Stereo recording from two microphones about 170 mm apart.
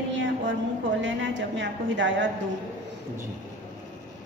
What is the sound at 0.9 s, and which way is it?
A woman's voice, 90° right.